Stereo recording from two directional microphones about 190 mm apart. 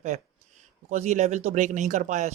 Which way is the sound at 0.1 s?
35° right (ahead or behind).